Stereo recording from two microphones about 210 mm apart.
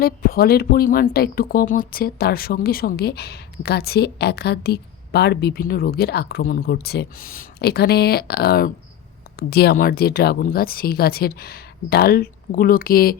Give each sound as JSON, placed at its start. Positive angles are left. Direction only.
{"t": 0.0, "sound": "speech", "side_deg": 45}